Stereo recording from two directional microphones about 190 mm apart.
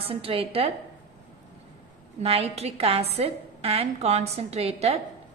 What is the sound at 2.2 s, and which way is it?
A woman's voice, 30° right (ahead or behind).